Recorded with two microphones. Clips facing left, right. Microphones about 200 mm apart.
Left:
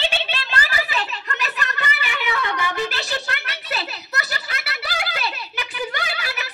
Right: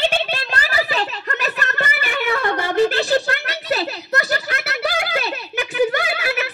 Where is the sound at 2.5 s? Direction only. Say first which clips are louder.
Right 8 dB; 35° right (ahead or behind).